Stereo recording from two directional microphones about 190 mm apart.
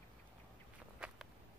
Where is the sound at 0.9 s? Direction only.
5° right (ahead or behind).